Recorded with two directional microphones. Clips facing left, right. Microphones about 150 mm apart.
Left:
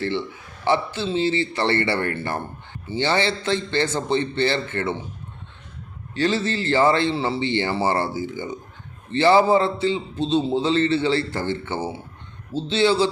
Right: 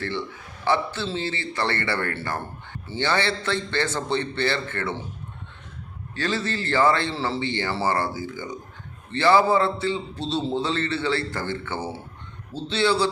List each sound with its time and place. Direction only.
0.6 s a man's voice: 20° left (ahead or behind)
6.1 s a man's voice: 20° left (ahead or behind)